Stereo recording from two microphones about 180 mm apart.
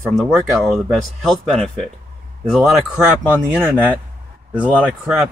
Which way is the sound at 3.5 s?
10° right (ahead or behind).